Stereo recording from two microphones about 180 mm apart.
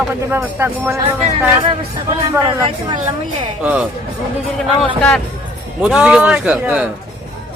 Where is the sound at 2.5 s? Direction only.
30° right (ahead or behind).